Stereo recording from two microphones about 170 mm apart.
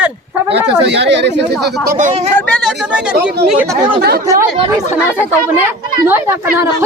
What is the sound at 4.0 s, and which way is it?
Speech, 65° right (ahead or behind).